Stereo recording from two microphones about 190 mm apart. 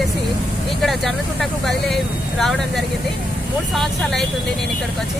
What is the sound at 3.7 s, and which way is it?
Speech, centre (ahead or behind).